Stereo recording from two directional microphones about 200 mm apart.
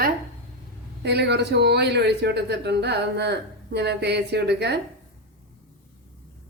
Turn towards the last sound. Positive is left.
turn(degrees=-55)  # may be behind; listen again after turning